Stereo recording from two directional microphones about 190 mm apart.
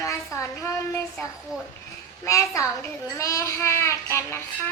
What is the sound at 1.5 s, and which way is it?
Speech, 5° right (ahead or behind).